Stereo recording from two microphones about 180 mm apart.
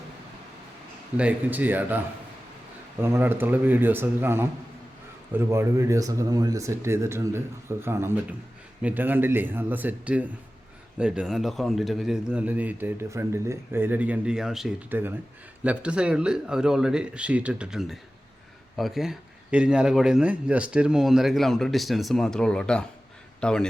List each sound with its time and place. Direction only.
1.1 s speech: 5° right (ahead or behind)
3.0 s a man's voice: 10° right (ahead or behind); by 23.6 s 5° left (ahead or behind)